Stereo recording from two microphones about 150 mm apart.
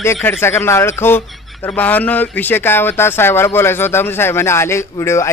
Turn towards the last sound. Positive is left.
turn(degrees=20)  # may be behind; listen again after turning